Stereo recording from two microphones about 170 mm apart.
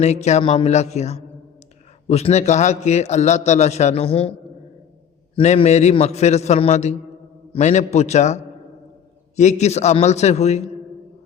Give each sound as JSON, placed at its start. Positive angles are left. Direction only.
{"t": 0.0, "sound": "a man's voice", "side_deg": 40}